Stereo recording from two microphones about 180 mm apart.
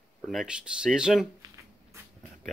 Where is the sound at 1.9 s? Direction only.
15° right (ahead or behind).